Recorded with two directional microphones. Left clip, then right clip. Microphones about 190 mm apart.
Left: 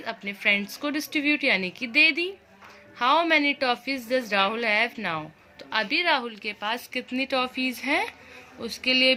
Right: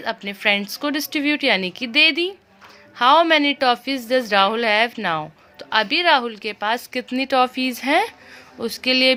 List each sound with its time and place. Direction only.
0.0 s a woman's voice: 55° right (ahead or behind)